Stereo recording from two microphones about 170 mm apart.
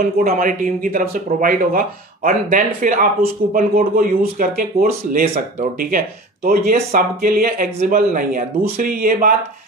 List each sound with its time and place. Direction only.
0.0 s speech: 60° right (ahead or behind)